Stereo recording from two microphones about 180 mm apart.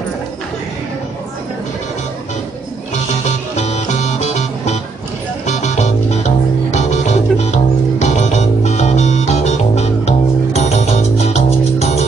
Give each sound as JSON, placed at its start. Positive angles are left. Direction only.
{"t": 3.5, "sound": "music", "side_deg": 40}